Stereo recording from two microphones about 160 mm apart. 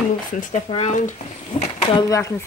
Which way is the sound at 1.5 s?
35° left (ahead or behind).